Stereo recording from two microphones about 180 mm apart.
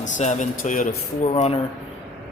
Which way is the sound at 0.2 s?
45° left (ahead or behind).